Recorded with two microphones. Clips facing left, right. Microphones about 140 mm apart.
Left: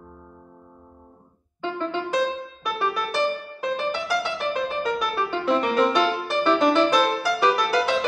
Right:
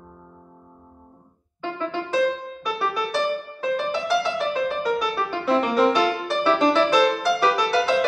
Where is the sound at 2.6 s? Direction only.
Centre (ahead or behind).